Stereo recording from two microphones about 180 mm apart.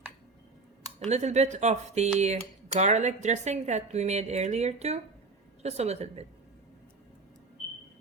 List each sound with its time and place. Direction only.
0.9 s speech: 40° right (ahead or behind)